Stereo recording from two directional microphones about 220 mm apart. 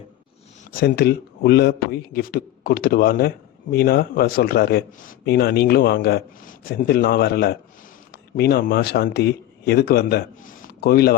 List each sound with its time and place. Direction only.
0.7 s a man's voice: 45° left (ahead or behind)